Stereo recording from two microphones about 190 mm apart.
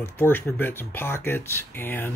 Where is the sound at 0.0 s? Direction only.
10° left (ahead or behind).